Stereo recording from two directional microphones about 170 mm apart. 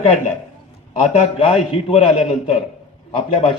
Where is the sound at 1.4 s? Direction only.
35° left (ahead or behind).